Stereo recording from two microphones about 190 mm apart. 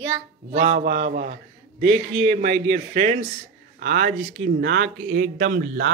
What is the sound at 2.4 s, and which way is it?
Speech, 60° right (ahead or behind).